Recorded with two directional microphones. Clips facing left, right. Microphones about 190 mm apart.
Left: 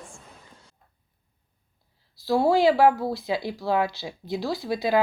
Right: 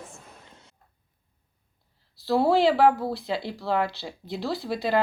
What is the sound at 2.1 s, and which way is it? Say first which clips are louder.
Speech: left 1 dB; centre (ahead or behind).